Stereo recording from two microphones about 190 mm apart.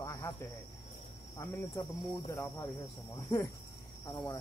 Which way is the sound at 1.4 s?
20° left (ahead or behind).